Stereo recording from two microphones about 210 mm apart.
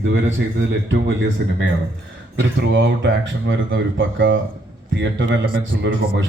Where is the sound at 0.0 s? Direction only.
65° right (ahead or behind).